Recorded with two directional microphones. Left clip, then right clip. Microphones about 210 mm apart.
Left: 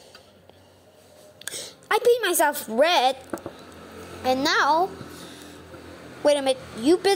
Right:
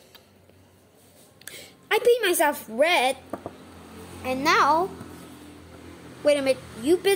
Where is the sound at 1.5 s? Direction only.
5° left (ahead or behind).